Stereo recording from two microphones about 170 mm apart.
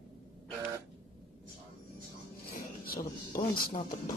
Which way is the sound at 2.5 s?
55° left (ahead or behind).